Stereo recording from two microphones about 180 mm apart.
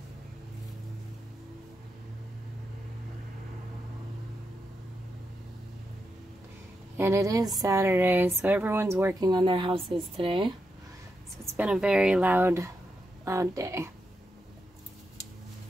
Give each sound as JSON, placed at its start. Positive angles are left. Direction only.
{"t": 7.0, "sound": "speech", "side_deg": -15}
{"t": 9.3, "sound": "speech", "side_deg": -25}
{"t": 11.5, "sound": "speech", "side_deg": -5}